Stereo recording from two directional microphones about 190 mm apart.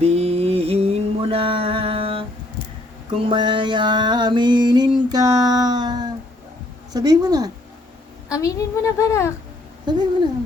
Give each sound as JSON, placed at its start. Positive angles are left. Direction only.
{"t": 0.0, "sound": "mantra", "side_deg": -35}
{"t": 3.2, "sound": "mantra", "side_deg": -25}
{"t": 6.9, "sound": "speech", "side_deg": -20}
{"t": 8.3, "sound": "a woman's voice", "side_deg": 15}
{"t": 9.9, "sound": "speech", "side_deg": -20}